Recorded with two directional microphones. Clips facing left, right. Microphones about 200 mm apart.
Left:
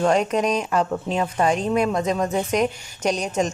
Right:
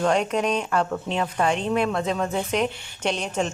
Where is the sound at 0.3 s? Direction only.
35° left (ahead or behind).